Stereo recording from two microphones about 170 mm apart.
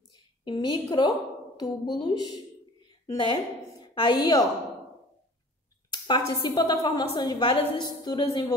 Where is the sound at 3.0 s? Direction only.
25° left (ahead or behind).